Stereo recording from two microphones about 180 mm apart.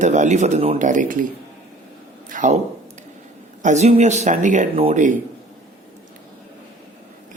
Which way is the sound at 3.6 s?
40° right (ahead or behind).